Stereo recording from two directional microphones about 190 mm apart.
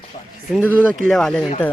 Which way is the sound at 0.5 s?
10° right (ahead or behind).